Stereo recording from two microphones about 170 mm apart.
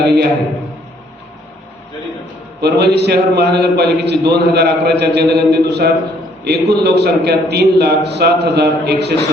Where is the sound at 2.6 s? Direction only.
75° right (ahead or behind).